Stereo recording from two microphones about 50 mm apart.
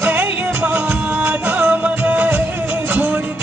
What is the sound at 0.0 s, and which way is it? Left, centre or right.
Music, right.